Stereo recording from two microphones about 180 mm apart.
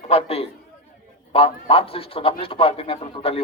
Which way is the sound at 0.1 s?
35° left (ahead or behind).